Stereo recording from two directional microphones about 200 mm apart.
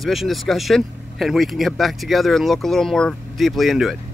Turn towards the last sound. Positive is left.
turn(degrees=0)  # may be behind; listen again after turning